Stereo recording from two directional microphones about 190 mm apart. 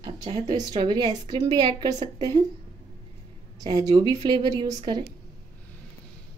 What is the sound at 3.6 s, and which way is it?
A woman's voice, 20° right (ahead or behind).